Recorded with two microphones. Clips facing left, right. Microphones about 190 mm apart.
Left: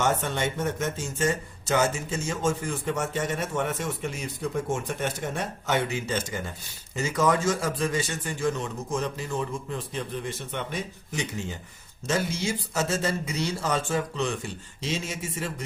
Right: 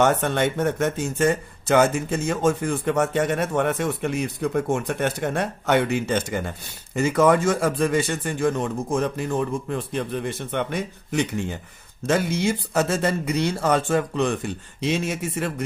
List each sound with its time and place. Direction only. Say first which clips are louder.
0.0 s speech: right 6 dB; 60° right (ahead or behind)